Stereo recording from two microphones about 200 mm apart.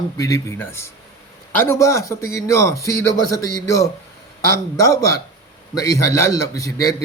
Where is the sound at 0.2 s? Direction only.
15° left (ahead or behind).